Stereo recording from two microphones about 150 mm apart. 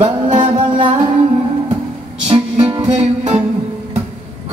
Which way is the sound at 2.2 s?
40° right (ahead or behind).